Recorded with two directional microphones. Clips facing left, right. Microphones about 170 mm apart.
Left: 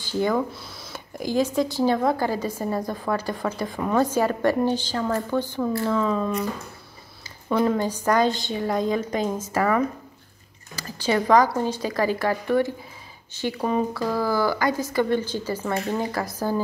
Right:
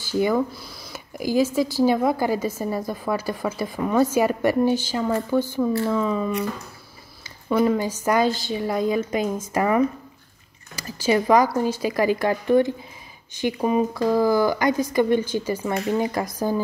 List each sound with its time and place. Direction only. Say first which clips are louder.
0.2 s speech: right 2 dB; 5° right (ahead or behind)
7.4 s speech: right 1 dB; 5° right (ahead or behind)
10.8 s speech: right 2 dB; 10° right (ahead or behind)